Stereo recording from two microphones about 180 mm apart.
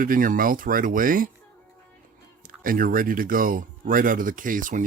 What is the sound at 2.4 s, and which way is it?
Speech, 50° right (ahead or behind).